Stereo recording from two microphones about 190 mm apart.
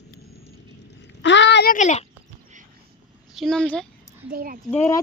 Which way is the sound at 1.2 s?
70° left (ahead or behind).